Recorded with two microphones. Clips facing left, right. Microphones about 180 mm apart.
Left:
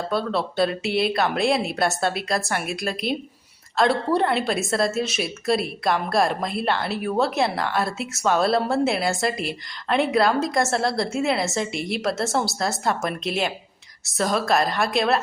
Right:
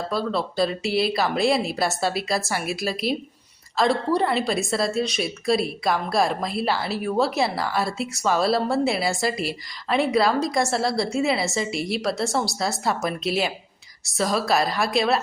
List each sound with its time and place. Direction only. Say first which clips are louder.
0.1 s a woman's voice: left 1 dB; centre (ahead or behind)